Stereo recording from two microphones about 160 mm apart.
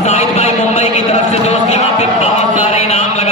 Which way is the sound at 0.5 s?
45° left (ahead or behind).